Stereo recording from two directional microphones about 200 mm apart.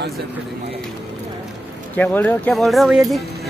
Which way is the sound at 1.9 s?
10° left (ahead or behind).